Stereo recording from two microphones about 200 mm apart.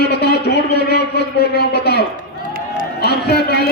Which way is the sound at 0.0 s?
55° left (ahead or behind).